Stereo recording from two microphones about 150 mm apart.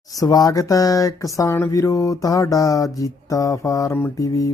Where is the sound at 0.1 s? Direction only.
25° left (ahead or behind).